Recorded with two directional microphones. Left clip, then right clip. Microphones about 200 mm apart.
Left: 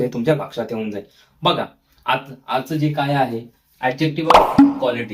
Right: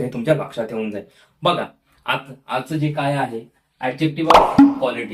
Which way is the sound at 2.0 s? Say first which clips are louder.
Left 3 dB; centre (ahead or behind).